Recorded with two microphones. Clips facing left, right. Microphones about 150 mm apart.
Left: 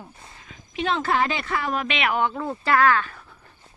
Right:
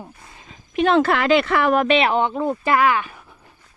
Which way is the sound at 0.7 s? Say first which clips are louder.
Right 7 dB; 60° right (ahead or behind).